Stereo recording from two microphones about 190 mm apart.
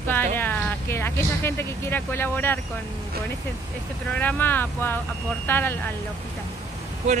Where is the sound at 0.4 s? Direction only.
10° left (ahead or behind).